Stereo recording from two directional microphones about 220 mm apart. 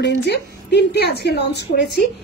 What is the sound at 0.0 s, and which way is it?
A woman's voice, 50° left (ahead or behind).